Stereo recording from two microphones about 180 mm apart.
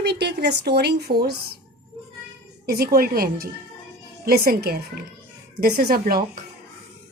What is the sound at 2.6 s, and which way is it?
A woman's voice, 55° right (ahead or behind).